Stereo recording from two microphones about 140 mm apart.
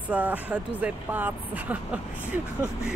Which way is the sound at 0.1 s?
10° right (ahead or behind).